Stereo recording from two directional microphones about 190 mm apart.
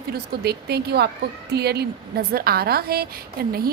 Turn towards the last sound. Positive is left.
turn(degrees=-55)  # may be behind; listen again after turning